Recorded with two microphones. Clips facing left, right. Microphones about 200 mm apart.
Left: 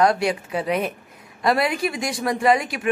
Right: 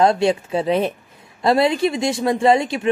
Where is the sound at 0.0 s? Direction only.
25° right (ahead or behind).